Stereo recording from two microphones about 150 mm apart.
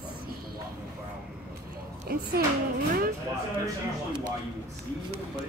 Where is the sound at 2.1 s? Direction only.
85° right.